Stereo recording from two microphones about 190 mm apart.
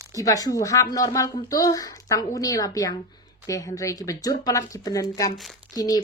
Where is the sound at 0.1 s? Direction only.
20° left (ahead or behind).